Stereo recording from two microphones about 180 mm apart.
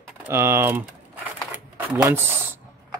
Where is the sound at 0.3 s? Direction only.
15° right (ahead or behind).